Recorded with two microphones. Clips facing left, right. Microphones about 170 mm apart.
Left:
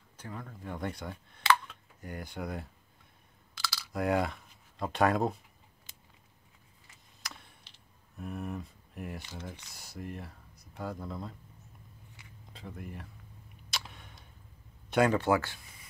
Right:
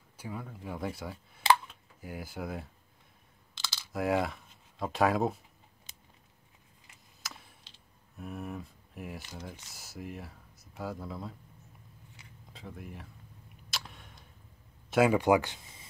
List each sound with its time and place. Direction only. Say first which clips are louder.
0.2 s speech: right 2 dB; 10° right (ahead or behind)
3.6 s computer keyboard: left 4 dB; 25° right (ahead or behind)
3.9 s speech: even; centre (ahead or behind)
7.2 s a sound: even; centre (ahead or behind)
8.2 s speech: left 1 dB; centre (ahead or behind)
12.5 s speech: left 1 dB; centre (ahead or behind)
13.7 s a sound: left 1 dB; centre (ahead or behind)
14.9 s speech: right 2 dB; 5° right (ahead or behind); by 15.9 s 25° right (ahead or behind)